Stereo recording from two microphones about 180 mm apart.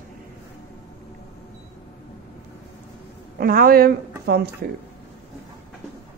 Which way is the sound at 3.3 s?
55° right (ahead or behind).